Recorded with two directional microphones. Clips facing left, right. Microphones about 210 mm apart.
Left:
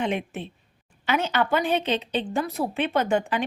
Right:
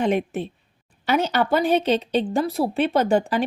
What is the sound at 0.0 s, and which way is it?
A woman's voice, 40° right (ahead or behind).